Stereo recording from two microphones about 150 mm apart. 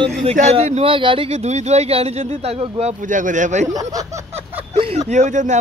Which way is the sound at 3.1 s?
60° right (ahead or behind).